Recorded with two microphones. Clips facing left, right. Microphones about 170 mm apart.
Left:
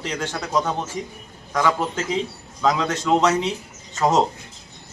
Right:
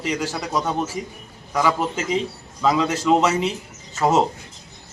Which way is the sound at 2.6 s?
5° right (ahead or behind).